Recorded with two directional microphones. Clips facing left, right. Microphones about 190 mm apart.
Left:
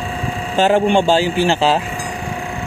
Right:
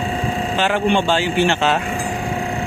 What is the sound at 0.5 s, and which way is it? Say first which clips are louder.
A man's voice: left 5 dB; 40° left (ahead or behind).